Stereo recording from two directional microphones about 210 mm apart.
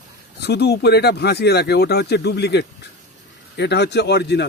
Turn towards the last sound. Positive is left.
turn(degrees=55)  # may be behind; listen again after turning